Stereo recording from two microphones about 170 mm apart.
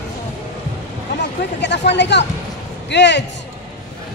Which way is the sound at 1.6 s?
90° left.